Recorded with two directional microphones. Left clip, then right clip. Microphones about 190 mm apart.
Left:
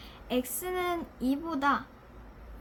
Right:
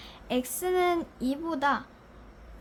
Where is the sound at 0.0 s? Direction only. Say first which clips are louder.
Right 1 dB; 40° right (ahead or behind).